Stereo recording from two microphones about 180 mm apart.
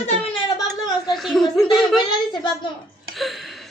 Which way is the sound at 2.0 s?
25° left (ahead or behind).